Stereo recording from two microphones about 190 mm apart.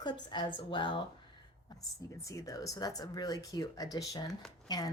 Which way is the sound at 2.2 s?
15° left (ahead or behind).